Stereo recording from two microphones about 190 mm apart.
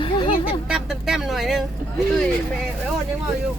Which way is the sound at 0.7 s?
Centre (ahead or behind).